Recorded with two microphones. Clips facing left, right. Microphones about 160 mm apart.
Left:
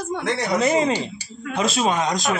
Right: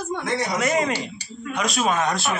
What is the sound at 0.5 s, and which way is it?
Speech, 25° left (ahead or behind).